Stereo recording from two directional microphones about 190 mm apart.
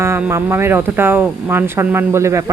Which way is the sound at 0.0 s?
15° right (ahead or behind).